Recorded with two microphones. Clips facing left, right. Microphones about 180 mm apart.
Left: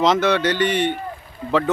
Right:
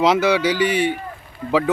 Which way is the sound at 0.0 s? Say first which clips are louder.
Right 1 dB; 10° right (ahead or behind).